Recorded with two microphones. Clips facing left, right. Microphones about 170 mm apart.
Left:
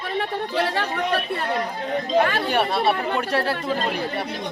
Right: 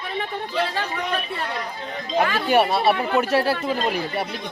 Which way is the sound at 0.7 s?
60° left (ahead or behind).